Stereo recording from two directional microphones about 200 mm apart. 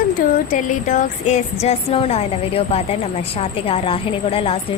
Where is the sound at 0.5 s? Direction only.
40° left (ahead or behind).